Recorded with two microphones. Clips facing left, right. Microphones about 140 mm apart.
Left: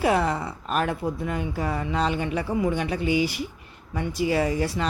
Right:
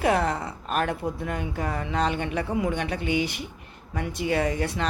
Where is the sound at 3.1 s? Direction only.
55° right (ahead or behind).